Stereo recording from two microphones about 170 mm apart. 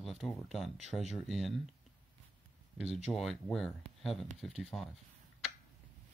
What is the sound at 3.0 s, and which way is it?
Speech, centre (ahead or behind).